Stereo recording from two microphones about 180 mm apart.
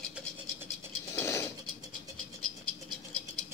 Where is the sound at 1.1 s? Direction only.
15° left (ahead or behind).